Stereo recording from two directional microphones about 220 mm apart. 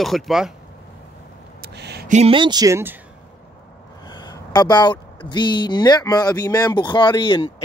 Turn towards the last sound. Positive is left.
turn(degrees=20)  # may be behind; listen again after turning